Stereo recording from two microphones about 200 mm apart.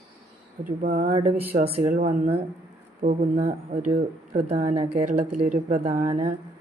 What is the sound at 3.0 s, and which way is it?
A woman's voice, 35° right (ahead or behind).